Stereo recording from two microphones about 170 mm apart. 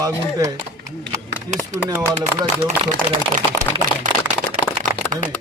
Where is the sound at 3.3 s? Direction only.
50° right (ahead or behind).